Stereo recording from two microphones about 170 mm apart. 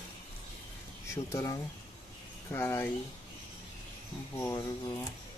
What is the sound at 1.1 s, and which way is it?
Speech, 20° left (ahead or behind).